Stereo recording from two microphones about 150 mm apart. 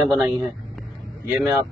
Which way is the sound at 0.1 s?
Centre (ahead or behind).